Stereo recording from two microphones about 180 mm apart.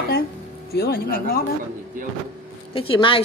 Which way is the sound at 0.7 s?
55° left (ahead or behind).